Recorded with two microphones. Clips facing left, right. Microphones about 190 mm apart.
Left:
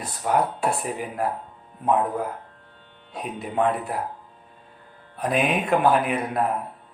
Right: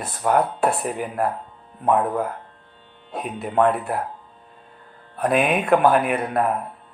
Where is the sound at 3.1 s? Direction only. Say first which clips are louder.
Right 3 dB; 55° right (ahead or behind).